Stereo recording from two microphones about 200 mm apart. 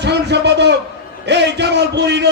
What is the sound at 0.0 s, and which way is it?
A man's voice, 60° right (ahead or behind).